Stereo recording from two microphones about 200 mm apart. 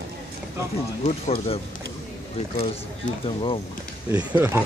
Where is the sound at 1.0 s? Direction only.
35° left (ahead or behind).